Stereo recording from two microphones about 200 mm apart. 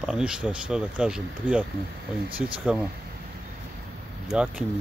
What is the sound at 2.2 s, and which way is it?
Speech, 25° right (ahead or behind).